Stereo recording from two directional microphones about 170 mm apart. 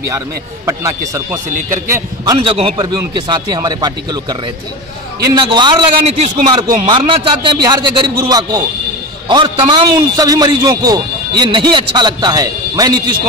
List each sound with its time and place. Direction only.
0.7 s a man's voice: 20° right (ahead or behind)
2.3 s a man's voice: 35° right (ahead or behind)